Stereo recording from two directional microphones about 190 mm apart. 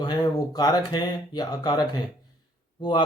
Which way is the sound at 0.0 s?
20° left (ahead or behind).